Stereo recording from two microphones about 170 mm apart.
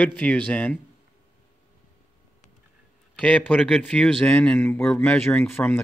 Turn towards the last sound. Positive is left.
turn(degrees=10)  # may be behind; listen again after turning